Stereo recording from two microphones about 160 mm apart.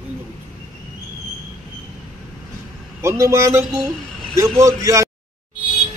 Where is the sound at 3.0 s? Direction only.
20° right (ahead or behind).